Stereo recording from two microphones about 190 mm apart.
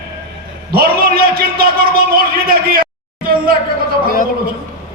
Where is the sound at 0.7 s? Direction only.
50° right (ahead or behind).